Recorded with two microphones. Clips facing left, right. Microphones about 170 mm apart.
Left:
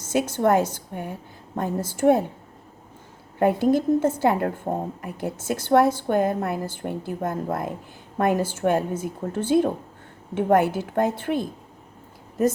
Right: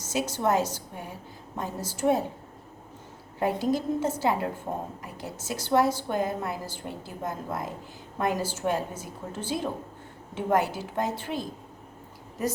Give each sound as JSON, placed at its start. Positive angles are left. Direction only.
{"t": 0.0, "sound": "a woman's voice", "side_deg": 55}
{"t": 3.3, "sound": "a woman's voice", "side_deg": 55}